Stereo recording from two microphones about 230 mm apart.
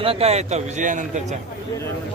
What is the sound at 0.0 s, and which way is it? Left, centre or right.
A man's voice, right.